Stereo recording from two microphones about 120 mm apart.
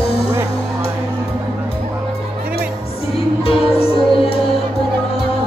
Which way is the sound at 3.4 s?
50° left (ahead or behind).